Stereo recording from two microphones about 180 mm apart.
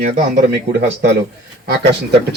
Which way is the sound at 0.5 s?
65° right (ahead or behind).